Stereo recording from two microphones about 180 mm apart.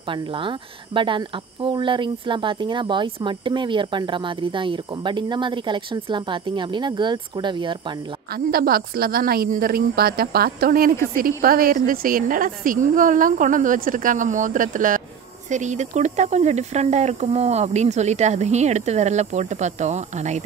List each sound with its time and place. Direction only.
0.0 s speech: 30° right (ahead or behind)
8.3 s a woman's voice: 55° right (ahead or behind); by 20.4 s 40° right (ahead or behind)